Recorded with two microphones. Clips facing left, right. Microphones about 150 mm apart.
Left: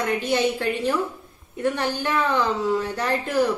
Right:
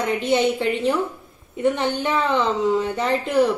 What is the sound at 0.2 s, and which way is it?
A woman's voice, 20° right (ahead or behind).